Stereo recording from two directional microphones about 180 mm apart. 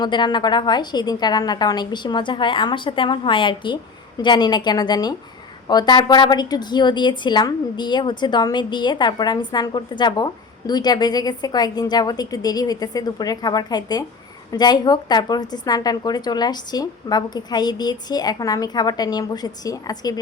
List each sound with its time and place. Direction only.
0.0 s a woman's voice: 25° left (ahead or behind)